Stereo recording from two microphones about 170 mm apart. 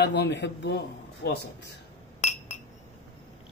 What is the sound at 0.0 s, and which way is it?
A man's voice, 90° left.